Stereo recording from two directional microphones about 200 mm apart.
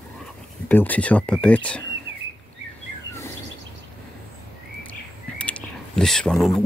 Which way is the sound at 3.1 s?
65° right (ahead or behind).